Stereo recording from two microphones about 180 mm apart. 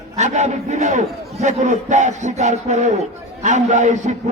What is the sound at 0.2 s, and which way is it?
A man's voice, 40° right (ahead or behind).